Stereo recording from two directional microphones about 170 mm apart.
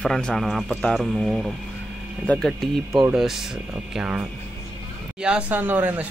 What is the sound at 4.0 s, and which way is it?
Speech, 5° right (ahead or behind).